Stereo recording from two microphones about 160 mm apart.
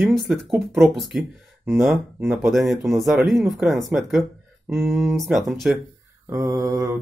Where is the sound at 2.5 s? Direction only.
Centre (ahead or behind).